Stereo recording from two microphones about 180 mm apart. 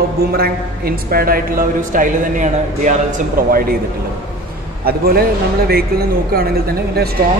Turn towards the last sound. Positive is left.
turn(degrees=-60)  # may be behind; listen again after turning